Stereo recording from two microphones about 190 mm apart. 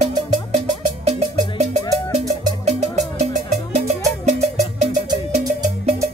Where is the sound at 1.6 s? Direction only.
35° right (ahead or behind).